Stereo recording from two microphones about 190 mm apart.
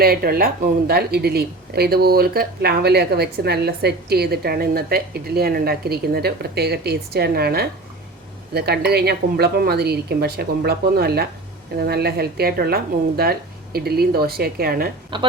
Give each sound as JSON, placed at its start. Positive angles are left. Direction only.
{"t": 0.0, "sound": "a woman's voice", "side_deg": -55}